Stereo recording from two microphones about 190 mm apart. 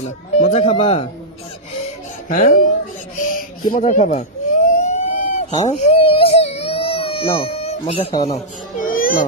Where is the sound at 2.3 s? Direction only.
45° left (ahead or behind).